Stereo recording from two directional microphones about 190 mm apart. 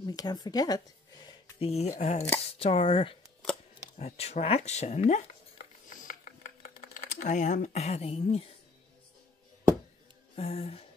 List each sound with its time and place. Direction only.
0.0 s speech: 20° left (ahead or behind)
1.6 s speech: 35° left (ahead or behind)
5.9 s music: 40° left (ahead or behind)
6.8 s speech: 45° left (ahead or behind)
10.3 s speech: 30° left (ahead or behind)